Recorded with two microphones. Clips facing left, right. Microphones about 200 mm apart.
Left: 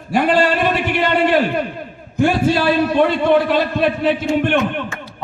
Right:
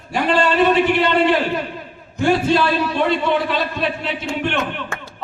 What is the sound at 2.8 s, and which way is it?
A man's voice, 50° left (ahead or behind).